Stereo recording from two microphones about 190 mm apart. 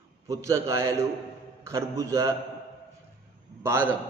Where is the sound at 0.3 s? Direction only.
15° right (ahead or behind).